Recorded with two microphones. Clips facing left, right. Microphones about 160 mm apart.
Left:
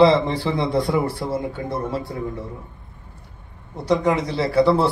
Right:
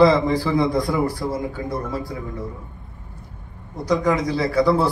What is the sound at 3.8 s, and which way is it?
A man's voice, 25° left (ahead or behind).